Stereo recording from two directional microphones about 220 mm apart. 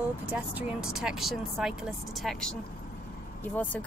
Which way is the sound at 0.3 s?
5° right (ahead or behind).